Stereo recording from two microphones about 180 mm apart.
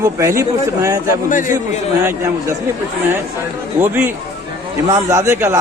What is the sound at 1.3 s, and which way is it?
Speech, 45° left (ahead or behind).